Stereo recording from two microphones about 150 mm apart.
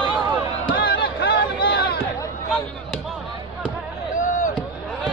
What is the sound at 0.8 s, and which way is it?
Chatter, 90° left.